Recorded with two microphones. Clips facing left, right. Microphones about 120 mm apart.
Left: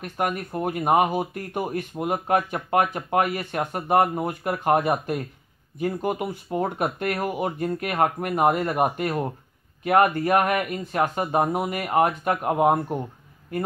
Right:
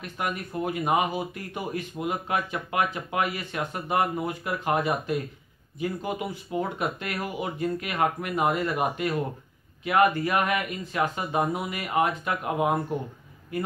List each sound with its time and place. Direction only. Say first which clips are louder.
0.0 s speech: left 5 dB; 50° left (ahead or behind)